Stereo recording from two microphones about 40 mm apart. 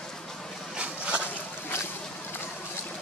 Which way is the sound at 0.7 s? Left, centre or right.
Right.